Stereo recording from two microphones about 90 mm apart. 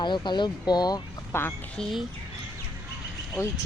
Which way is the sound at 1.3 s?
30° left (ahead or behind).